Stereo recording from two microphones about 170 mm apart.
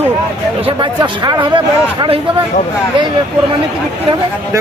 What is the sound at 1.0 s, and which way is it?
Speech, 25° right (ahead or behind).